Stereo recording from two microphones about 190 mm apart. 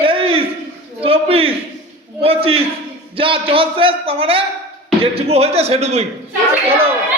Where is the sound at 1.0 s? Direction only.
30° right (ahead or behind).